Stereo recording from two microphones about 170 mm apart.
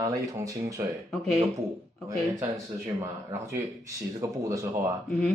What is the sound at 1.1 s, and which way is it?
Speech, centre (ahead or behind).